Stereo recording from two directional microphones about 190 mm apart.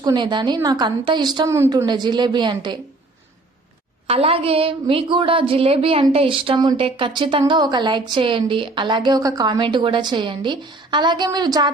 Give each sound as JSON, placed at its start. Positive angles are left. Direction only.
{"t": 0.0, "sound": "a woman's voice", "side_deg": -25}
{"t": 4.0, "sound": "a woman's voice", "side_deg": -30}